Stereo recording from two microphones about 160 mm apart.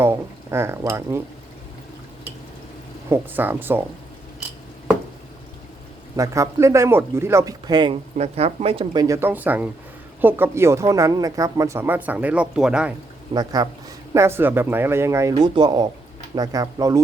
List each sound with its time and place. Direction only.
0.0 s speech: 15° right (ahead or behind)
3.1 s speech: 10° right (ahead or behind)
6.1 s a man's voice: 20° right (ahead or behind)
8.2 s a man's voice: 40° right (ahead or behind); by 12.9 s 5° right (ahead or behind)
13.3 s a man's voice: 25° right (ahead or behind)